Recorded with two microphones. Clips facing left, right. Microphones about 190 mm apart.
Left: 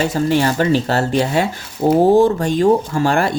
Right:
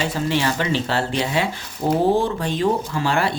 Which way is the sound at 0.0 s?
45° left (ahead or behind).